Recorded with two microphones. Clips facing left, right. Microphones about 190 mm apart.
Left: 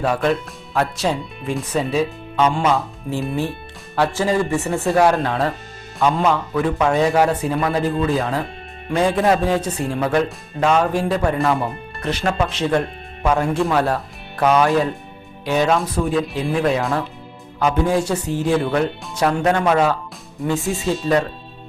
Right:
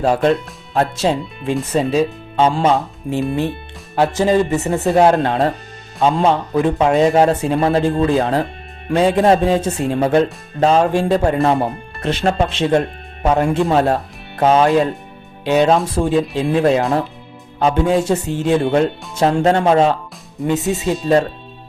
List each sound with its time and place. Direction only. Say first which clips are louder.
0.0 s speech: right 4 dB; 30° right (ahead or behind)
2.7 s speech: right 3 dB; 20° right (ahead or behind)